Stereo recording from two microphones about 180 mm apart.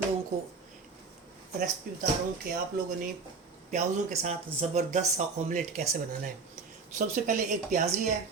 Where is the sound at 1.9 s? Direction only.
50° right (ahead or behind).